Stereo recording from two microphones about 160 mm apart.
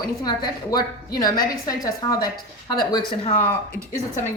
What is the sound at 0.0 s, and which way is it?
A woman's voice, 25° left (ahead or behind).